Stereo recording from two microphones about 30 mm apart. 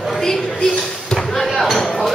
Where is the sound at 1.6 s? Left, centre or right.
Centre.